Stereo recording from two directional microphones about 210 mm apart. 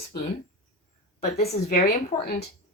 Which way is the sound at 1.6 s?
45° left (ahead or behind).